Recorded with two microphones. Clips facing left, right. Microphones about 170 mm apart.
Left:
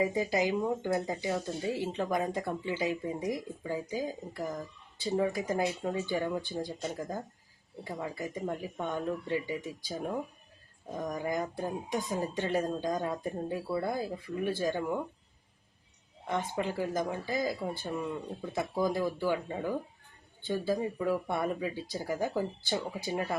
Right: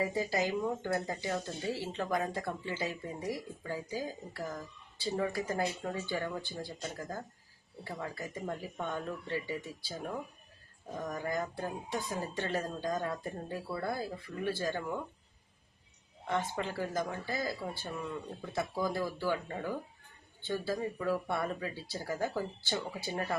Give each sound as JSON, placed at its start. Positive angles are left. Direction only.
{"t": 0.0, "sound": "speech", "side_deg": 15}
{"t": 16.2, "sound": "speech", "side_deg": 15}